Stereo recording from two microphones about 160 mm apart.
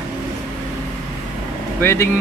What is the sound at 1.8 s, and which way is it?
Speech, 15° left (ahead or behind).